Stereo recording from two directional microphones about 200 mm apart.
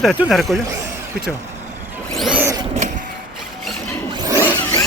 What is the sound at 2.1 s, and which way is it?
Speech, centre (ahead or behind).